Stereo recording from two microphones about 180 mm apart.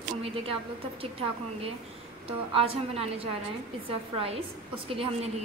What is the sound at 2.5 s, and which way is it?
A woman's voice, 35° right (ahead or behind).